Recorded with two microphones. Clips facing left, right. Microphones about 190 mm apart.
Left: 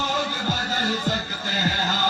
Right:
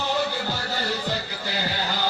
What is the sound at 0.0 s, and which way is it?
Music, 45° left (ahead or behind).